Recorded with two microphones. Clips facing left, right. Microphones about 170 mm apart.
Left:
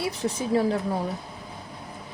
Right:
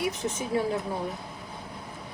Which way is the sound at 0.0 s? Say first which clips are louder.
Left 2 dB; 35° left (ahead or behind).